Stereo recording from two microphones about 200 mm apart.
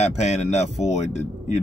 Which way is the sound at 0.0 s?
35° left (ahead or behind).